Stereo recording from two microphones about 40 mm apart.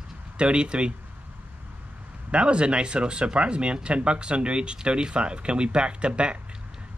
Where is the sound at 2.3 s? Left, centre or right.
Right.